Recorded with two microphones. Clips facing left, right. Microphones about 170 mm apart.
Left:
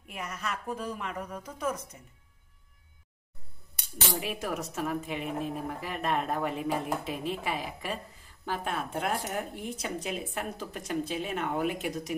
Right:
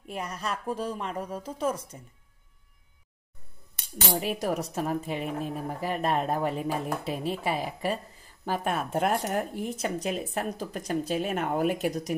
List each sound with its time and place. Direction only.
0.1 s speech: 30° right (ahead or behind)
4.2 s speech: 35° right (ahead or behind)